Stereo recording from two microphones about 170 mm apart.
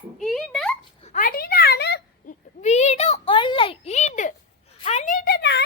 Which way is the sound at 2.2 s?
45° left (ahead or behind).